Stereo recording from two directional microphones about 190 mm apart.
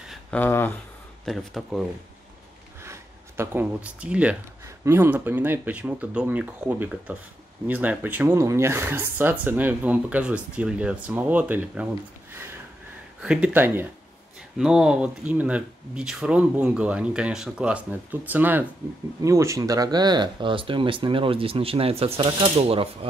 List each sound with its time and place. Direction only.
0.1 s speech: 10° left (ahead or behind)
1.2 s speech: centre (ahead or behind)
2.8 s speech: 15° right (ahead or behind)
13.2 s speech: 5° right (ahead or behind); by 22.8 s 30° right (ahead or behind)